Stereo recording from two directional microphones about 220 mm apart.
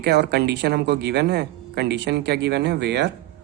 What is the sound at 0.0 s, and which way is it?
Speech, 50° right (ahead or behind).